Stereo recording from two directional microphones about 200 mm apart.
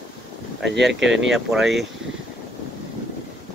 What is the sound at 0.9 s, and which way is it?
Speech, 65° right (ahead or behind).